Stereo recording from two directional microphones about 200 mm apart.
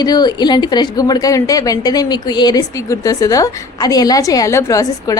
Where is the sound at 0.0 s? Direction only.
20° left (ahead or behind).